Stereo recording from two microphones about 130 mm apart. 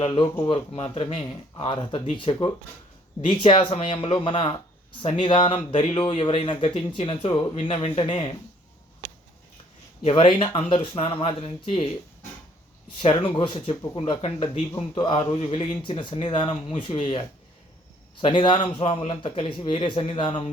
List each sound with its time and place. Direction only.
0.4 s speech: 40° left (ahead or behind)
10.0 s speech: 45° left (ahead or behind)
13.0 s speech: 40° left (ahead or behind)